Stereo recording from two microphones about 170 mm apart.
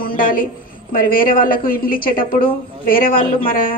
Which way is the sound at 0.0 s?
55° left (ahead or behind).